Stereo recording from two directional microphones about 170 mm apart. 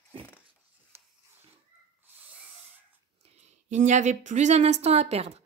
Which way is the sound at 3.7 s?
45° right (ahead or behind).